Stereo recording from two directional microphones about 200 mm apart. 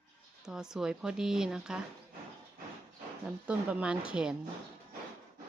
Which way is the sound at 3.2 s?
5° right (ahead or behind).